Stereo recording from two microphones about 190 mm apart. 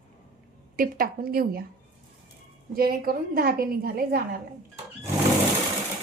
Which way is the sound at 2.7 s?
50° right (ahead or behind).